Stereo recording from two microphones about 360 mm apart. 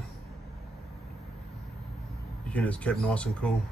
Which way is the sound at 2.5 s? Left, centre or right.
Centre.